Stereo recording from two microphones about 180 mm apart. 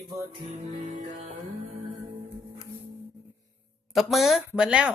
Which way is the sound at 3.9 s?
Centre (ahead or behind).